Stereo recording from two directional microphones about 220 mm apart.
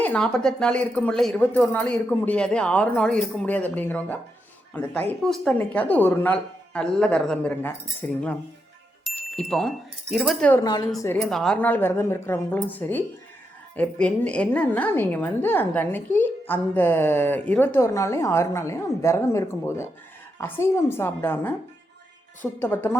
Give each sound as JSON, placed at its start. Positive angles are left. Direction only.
{"t": 0.0, "sound": "a woman's voice", "side_deg": 5}
{"t": 9.0, "sound": "wind chime", "side_deg": 5}
{"t": 9.5, "sound": "a woman's voice", "side_deg": 0}
{"t": 10.6, "sound": "a woman's voice", "side_deg": 15}
{"t": 11.2, "sound": "a woman's voice", "side_deg": 0}